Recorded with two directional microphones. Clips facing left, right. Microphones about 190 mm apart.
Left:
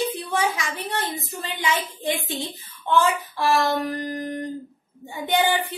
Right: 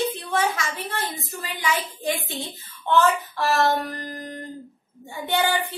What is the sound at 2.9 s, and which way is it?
A woman's voice, 10° left (ahead or behind).